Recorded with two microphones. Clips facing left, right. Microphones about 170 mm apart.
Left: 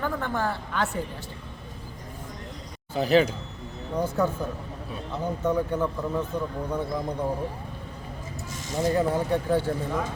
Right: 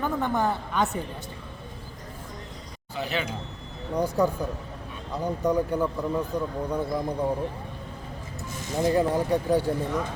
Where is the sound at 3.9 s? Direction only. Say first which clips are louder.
Right 2 dB; 15° right (ahead or behind).